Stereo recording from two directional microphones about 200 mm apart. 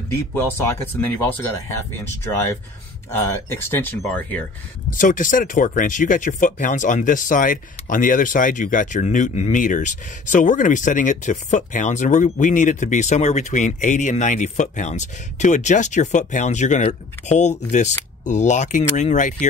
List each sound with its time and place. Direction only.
0.3 s speech: 10° left (ahead or behind)
3.1 s speech: 10° left (ahead or behind)
4.9 s speech: 40° left (ahead or behind)